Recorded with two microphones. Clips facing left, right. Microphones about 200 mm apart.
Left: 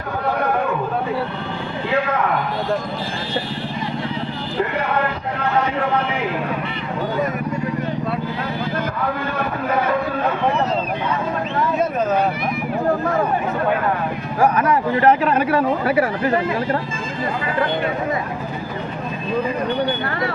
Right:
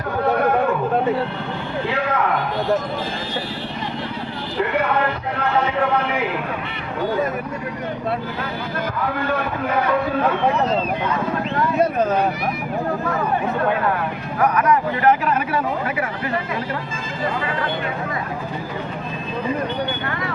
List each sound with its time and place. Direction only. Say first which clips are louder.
14.3 s speech: left 1 dB; 30° left (ahead or behind)